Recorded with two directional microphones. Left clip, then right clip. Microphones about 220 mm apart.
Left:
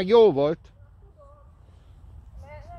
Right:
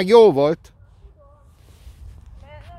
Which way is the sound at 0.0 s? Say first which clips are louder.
Right 5 dB; 25° right (ahead or behind).